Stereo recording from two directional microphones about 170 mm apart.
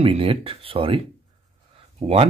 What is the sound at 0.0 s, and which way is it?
Speech, 35° right (ahead or behind).